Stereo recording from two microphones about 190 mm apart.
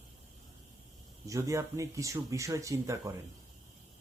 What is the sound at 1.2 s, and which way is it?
Speech, 15° right (ahead or behind).